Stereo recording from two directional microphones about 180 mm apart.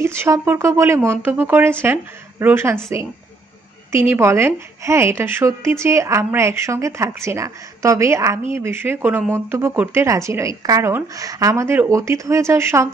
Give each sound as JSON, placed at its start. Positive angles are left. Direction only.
{"t": 0.0, "sound": "a woman's voice", "side_deg": -15}